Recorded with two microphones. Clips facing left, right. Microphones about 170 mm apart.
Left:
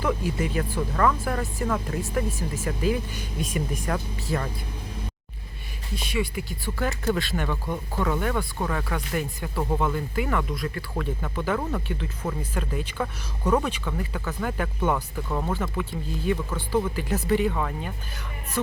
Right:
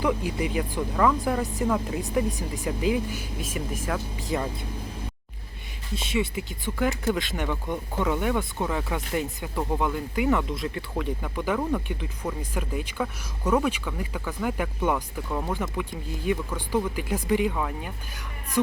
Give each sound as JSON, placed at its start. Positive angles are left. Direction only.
{"t": 0.0, "sound": "speech", "side_deg": -15}
{"t": 4.3, "sound": "speech", "side_deg": -15}
{"t": 5.9, "sound": "speech", "side_deg": -25}
{"t": 10.9, "sound": "speech", "side_deg": -10}
{"t": 12.2, "sound": "speech", "side_deg": 5}
{"t": 12.5, "sound": "speech", "side_deg": -10}